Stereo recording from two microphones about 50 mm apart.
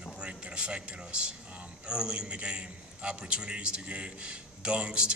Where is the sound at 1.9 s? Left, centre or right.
Centre.